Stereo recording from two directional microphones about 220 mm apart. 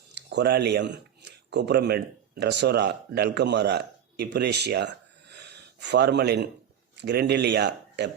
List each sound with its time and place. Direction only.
0.1 s speech: 50° right (ahead or behind)